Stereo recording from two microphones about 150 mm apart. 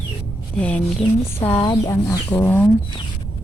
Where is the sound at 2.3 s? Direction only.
10° left (ahead or behind).